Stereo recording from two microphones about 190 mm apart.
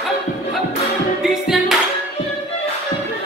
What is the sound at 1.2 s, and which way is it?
Music, centre (ahead or behind).